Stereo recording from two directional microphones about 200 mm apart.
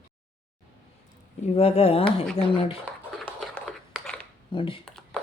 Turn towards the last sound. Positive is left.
turn(degrees=5)  # may be behind; listen again after turning